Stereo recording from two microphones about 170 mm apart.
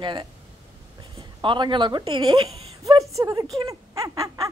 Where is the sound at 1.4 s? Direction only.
30° right (ahead or behind).